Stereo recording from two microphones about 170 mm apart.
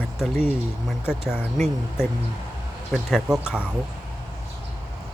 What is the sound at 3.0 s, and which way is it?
Speech, 5° right (ahead or behind).